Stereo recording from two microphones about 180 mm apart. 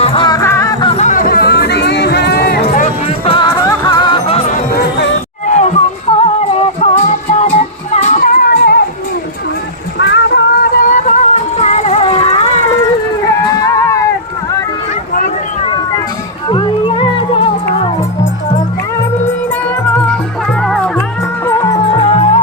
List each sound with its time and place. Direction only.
0.0 s music: 30° left (ahead or behind); by 2.8 s 60° left (ahead or behind)
2.8 s music: 30° left (ahead or behind); by 8.8 s 55° left (ahead or behind)
10.0 s a sound: 75° left (ahead or behind)
10.8 s music: 45° left (ahead or behind)
13.4 s music: 20° left (ahead or behind)
16.5 s music: 25° left (ahead or behind)
20.6 s music: 5° left (ahead or behind)
21.4 s music: 15° left (ahead or behind)
22.0 s music: 35° left (ahead or behind)